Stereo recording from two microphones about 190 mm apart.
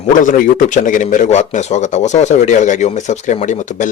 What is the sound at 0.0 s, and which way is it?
A man's voice, 45° left (ahead or behind).